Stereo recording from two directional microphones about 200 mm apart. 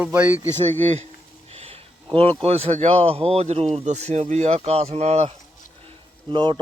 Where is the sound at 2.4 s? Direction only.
30° right (ahead or behind).